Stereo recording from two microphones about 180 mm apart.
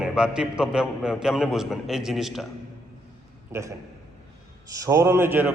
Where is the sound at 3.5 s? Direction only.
15° right (ahead or behind).